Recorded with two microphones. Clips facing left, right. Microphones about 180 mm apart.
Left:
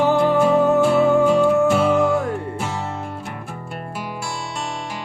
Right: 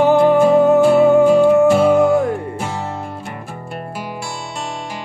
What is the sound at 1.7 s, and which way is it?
Music, 45° right (ahead or behind).